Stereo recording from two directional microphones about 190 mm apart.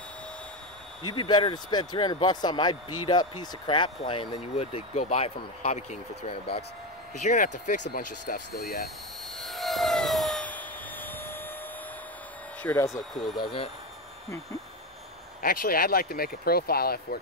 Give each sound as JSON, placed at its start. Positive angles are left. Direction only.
{"t": 1.1, "sound": "speech", "side_deg": 25}
{"t": 9.4, "sound": "jet engine", "side_deg": 0}
{"t": 12.6, "sound": "speech", "side_deg": 15}
{"t": 13.4, "sound": "speech", "side_deg": 25}
{"t": 15.4, "sound": "speech", "side_deg": 50}